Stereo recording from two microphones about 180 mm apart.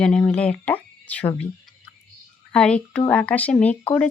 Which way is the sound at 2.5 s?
5° left (ahead or behind).